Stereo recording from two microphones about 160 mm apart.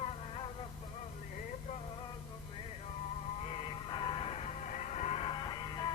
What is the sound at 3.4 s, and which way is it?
Music, 35° left (ahead or behind).